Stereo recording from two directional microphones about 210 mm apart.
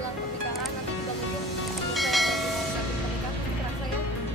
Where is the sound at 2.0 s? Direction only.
Centre (ahead or behind).